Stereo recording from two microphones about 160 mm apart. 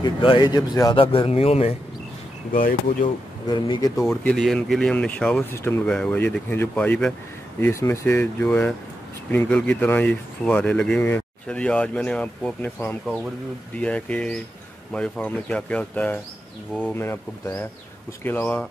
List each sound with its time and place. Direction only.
0.0 s speech: 30° left (ahead or behind)
1.0 s speech: 35° left (ahead or behind)
2.5 s speech: 60° left (ahead or behind)
3.4 s speech: 30° left (ahead or behind)
4.0 s speech: 5° left (ahead or behind)